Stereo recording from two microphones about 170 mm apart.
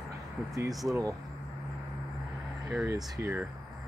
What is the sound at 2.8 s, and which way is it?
Speech, 15° right (ahead or behind).